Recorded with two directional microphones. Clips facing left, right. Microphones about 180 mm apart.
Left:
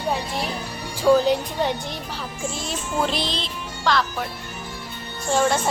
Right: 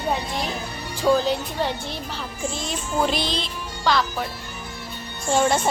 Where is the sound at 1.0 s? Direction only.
10° left (ahead or behind).